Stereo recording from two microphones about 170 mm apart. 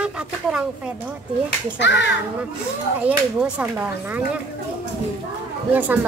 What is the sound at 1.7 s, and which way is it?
Speech, 90° left.